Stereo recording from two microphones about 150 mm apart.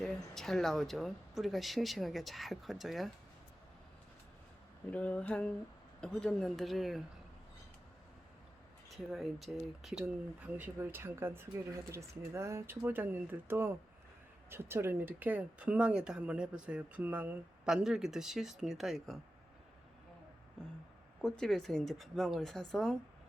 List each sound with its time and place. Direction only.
0.0 s speech: centre (ahead or behind)
4.9 s a sound: 10° left (ahead or behind)
6.0 s speech: 5° left (ahead or behind)
9.1 s speech: centre (ahead or behind)
21.2 s speech: 5° left (ahead or behind)